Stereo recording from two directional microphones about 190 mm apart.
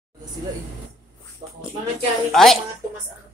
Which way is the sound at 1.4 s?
30° right (ahead or behind).